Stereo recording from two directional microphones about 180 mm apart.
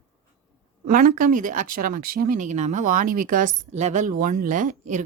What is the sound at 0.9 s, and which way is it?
Speech, 50° right (ahead or behind).